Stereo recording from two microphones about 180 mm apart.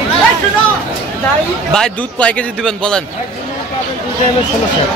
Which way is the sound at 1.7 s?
5° left (ahead or behind).